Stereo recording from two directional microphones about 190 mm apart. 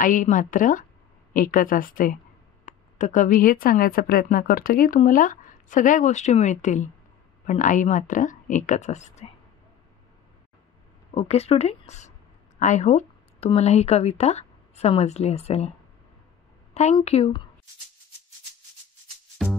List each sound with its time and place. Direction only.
0.0 s a woman's voice: 45° left (ahead or behind)
11.1 s a woman's voice: 35° left (ahead or behind)
12.5 s a sound: 40° left (ahead or behind)
13.5 s a woman's voice: 35° left (ahead or behind)
16.9 s a woman's voice: 35° left (ahead or behind)